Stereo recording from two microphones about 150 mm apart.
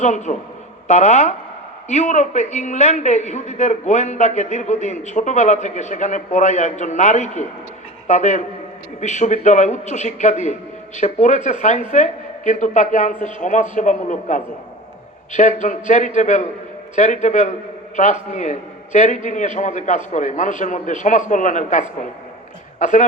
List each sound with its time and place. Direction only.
0.0 s a woman's voice: 50° left (ahead or behind)